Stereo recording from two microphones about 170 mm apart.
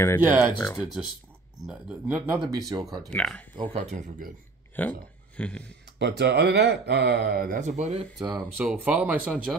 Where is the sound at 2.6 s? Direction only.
20° right (ahead or behind).